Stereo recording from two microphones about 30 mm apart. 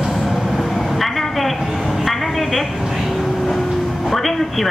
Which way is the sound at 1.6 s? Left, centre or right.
Centre.